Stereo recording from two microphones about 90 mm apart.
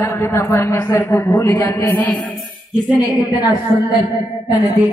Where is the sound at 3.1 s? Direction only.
50° left (ahead or behind).